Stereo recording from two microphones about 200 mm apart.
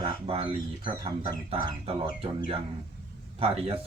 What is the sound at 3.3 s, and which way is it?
Speech, 30° right (ahead or behind).